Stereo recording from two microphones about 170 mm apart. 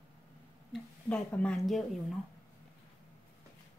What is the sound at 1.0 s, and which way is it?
Speech, 10° left (ahead or behind).